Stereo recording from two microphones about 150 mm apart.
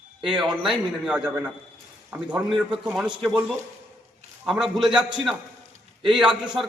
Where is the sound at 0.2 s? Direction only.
5° right (ahead or behind).